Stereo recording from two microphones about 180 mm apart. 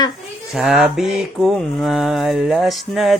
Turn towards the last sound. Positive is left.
turn(degrees=0)  # may be behind; listen again after turning